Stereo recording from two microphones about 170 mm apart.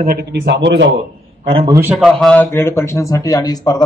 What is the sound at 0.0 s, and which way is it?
Speech, 65° right (ahead or behind).